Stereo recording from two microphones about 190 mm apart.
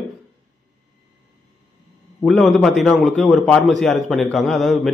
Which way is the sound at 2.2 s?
Centre (ahead or behind).